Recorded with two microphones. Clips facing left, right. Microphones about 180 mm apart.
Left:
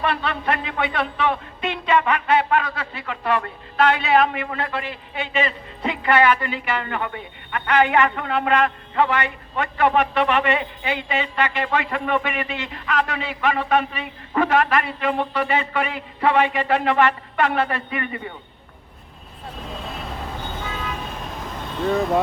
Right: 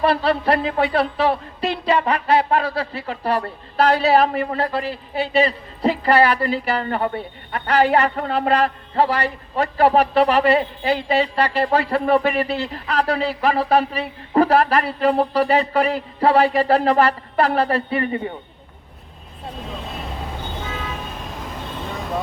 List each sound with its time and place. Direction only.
0.0 s speech: 35° right (ahead or behind)